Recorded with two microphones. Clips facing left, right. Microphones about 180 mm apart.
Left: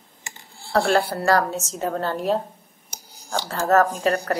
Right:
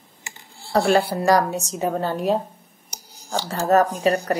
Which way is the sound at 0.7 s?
15° right (ahead or behind).